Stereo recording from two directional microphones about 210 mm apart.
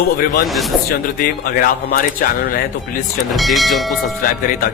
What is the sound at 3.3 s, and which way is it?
Speech, centre (ahead or behind).